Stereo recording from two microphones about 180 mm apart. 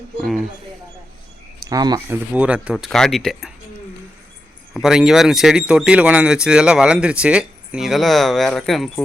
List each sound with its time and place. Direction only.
0.2 s speech: centre (ahead or behind)
1.6 s speech: 20° right (ahead or behind)
2.3 s speech: 5° right (ahead or behind)
4.7 s speech: 5° right (ahead or behind)